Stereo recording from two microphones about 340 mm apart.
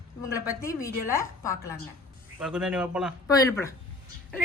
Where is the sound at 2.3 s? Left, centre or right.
Centre.